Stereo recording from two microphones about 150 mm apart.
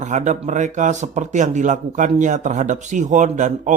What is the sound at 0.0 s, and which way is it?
A man's voice, 55° right (ahead or behind).